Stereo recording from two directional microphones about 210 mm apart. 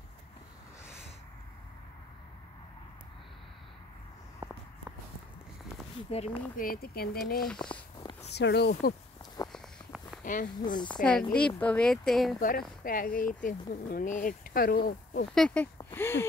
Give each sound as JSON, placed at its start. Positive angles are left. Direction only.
{"t": 6.0, "sound": "speech", "side_deg": 30}
{"t": 8.0, "sound": "a sound", "side_deg": 25}
{"t": 8.3, "sound": "speech", "side_deg": 55}
{"t": 9.5, "sound": "walk", "side_deg": 0}
{"t": 10.2, "sound": "speech", "side_deg": 40}
{"t": 11.3, "sound": "speech", "side_deg": 5}
{"t": 12.4, "sound": "speech", "side_deg": 40}
{"t": 15.3, "sound": "speech", "side_deg": 5}